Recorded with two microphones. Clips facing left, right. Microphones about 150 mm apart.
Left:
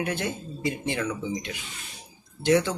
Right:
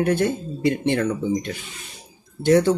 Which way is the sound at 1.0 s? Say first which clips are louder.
Right 7 dB; 50° right (ahead or behind).